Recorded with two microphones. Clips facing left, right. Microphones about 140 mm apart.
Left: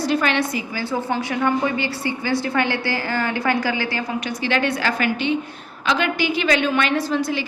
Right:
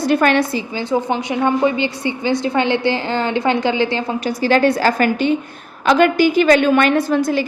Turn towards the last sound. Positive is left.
turn(degrees=-50)  # may be behind; listen again after turning